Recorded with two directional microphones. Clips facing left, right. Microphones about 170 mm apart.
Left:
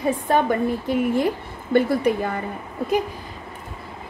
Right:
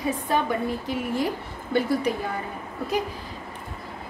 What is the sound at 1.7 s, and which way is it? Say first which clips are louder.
Speech: left 5 dB; 55° left (ahead or behind).